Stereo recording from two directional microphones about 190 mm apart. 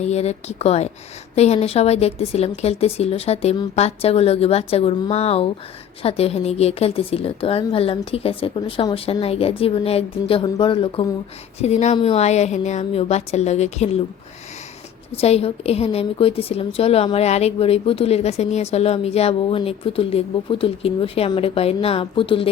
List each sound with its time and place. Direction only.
0.0 s a woman's voice: 35° left (ahead or behind)
15.1 s a woman's voice: 30° left (ahead or behind)